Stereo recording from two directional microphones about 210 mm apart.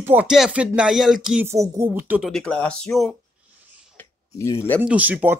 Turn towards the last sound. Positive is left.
turn(degrees=-5)  # may be behind; listen again after turning